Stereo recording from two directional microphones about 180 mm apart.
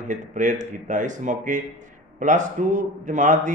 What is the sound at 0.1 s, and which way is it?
A man's voice, 45° right (ahead or behind).